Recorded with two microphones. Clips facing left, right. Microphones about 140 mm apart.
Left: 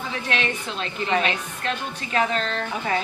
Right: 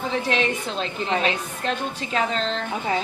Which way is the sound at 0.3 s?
30° right (ahead or behind).